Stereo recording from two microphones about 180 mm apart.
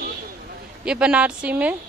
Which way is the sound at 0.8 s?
5° right (ahead or behind).